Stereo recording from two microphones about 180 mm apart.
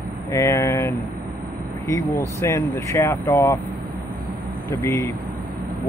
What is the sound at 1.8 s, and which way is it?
Speech, 15° left (ahead or behind).